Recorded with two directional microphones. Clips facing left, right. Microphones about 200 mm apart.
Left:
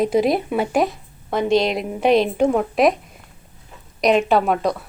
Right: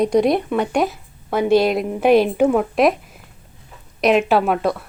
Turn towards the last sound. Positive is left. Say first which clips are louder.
# right 1 dB
turn(degrees=0)  # may be behind; listen again after turning